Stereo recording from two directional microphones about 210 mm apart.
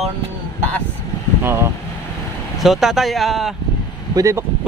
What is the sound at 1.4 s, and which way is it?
Speech, 10° right (ahead or behind).